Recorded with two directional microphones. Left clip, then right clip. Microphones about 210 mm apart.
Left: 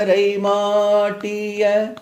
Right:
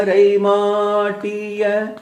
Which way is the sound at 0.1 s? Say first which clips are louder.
Right 5 dB; 35° left (ahead or behind).